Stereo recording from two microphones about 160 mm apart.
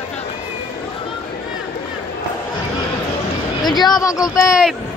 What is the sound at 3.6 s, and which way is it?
Speech, 25° left (ahead or behind).